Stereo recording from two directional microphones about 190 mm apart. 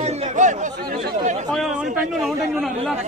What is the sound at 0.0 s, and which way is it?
Chatter, 40° right (ahead or behind).